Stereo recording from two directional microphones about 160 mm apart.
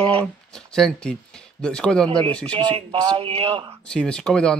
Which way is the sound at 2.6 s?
35° right (ahead or behind).